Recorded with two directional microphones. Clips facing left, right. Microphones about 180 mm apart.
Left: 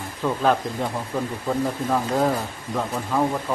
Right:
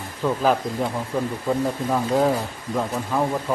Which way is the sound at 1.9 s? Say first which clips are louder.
Right 2 dB; 5° right (ahead or behind).